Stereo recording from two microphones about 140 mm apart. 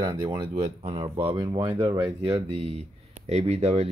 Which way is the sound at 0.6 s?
45° right (ahead or behind).